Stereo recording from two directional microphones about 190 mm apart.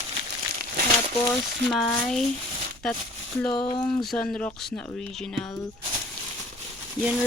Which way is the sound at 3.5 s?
25° left (ahead or behind).